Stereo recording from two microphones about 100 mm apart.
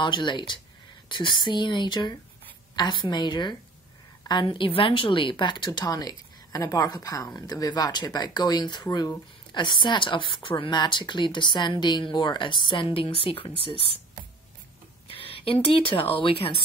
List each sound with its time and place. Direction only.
0.0 s a woman's voice: 50° left (ahead or behind)
12.9 s a woman's voice: 65° left (ahead or behind)
15.0 s speech: 65° left (ahead or behind)